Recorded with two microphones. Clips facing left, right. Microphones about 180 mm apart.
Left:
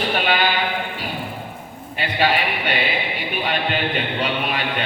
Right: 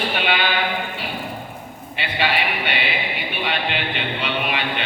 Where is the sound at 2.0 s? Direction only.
40° left (ahead or behind).